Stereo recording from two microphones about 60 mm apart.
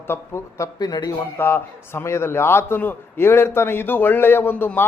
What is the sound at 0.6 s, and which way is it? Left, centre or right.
Speech, left.